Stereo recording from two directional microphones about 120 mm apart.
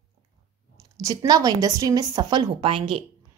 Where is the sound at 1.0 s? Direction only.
30° right (ahead or behind).